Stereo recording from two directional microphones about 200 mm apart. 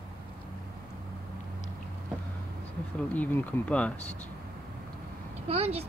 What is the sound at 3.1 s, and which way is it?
Speech, 10° left (ahead or behind).